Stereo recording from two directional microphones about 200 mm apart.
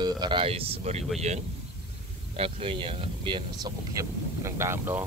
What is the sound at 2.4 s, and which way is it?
Speech, 25° right (ahead or behind).